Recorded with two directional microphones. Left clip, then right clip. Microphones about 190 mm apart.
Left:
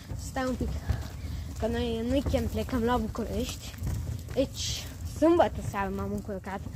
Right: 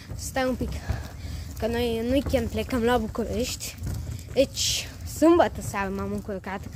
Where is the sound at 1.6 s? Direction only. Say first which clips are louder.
Right 4 dB; 30° right (ahead or behind).